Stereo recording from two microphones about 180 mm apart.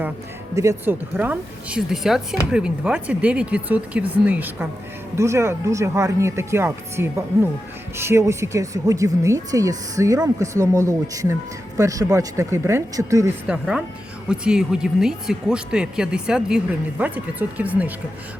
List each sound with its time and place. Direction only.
0.5 s speech: 15° right (ahead or behind)
13.5 s speech: 5° right (ahead or behind)